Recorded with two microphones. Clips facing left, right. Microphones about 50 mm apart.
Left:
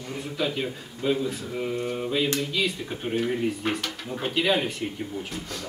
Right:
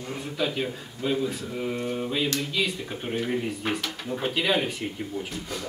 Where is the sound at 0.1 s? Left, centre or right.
Centre.